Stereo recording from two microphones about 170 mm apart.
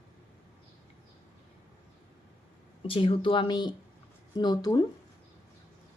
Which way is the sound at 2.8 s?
30° left (ahead or behind).